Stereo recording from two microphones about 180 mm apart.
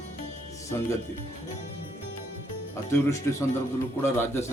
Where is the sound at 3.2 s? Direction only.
15° left (ahead or behind).